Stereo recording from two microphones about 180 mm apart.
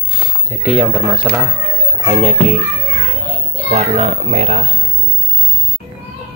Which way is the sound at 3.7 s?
40° right (ahead or behind).